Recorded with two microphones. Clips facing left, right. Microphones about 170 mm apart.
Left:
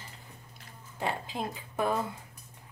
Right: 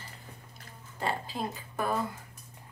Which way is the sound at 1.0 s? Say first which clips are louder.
Even; 20° left (ahead or behind).